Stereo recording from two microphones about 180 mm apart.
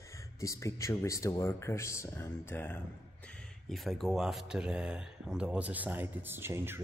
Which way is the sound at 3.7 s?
Centre (ahead or behind).